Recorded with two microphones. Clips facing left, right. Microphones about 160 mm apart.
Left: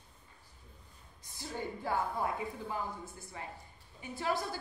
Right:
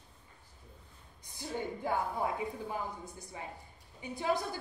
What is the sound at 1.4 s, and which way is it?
A woman's voice, 15° right (ahead or behind).